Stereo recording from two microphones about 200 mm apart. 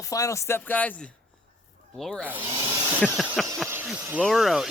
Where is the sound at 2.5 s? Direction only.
20° right (ahead or behind).